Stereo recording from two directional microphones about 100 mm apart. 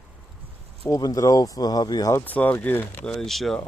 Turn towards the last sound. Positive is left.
turn(degrees=5)  # may be behind; listen again after turning